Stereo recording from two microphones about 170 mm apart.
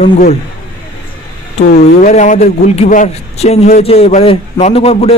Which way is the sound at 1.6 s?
40° left (ahead or behind).